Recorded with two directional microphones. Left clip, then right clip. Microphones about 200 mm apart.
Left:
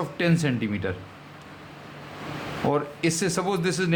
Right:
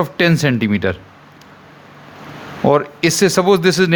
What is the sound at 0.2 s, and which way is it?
Speech, 45° right (ahead or behind).